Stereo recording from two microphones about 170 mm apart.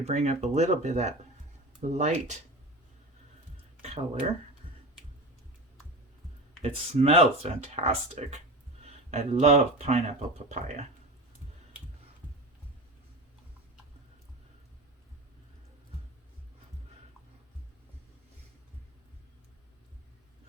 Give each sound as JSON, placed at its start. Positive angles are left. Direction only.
{"t": 0.0, "sound": "speech", "side_deg": -40}
{"t": 3.8, "sound": "speech", "side_deg": -40}
{"t": 6.6, "sound": "speech", "side_deg": -35}